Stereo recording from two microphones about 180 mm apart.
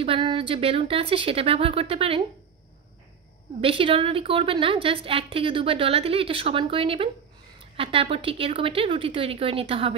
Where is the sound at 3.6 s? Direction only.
30° right (ahead or behind).